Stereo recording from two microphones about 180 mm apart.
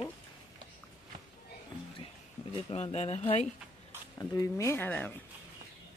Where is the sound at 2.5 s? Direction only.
35° left (ahead or behind).